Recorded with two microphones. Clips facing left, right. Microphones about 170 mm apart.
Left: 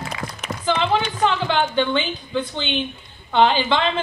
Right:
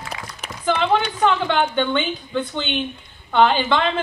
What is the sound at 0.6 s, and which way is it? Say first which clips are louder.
A woman's voice: right 1 dB; 55° right (ahead or behind).